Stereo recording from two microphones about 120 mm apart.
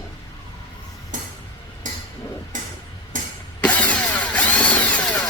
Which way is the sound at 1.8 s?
90° right.